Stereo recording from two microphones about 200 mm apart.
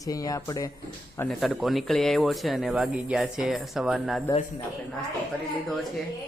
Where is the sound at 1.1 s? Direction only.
5° left (ahead or behind).